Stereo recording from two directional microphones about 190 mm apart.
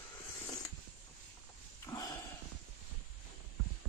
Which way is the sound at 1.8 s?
15° left (ahead or behind).